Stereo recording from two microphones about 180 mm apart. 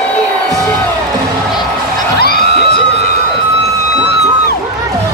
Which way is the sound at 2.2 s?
60° left (ahead or behind).